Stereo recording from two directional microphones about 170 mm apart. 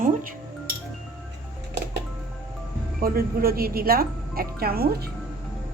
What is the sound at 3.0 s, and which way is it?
Speech, 60° right (ahead or behind).